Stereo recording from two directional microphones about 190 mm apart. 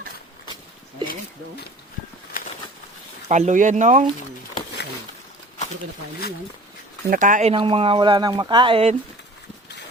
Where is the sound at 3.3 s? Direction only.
40° right (ahead or behind).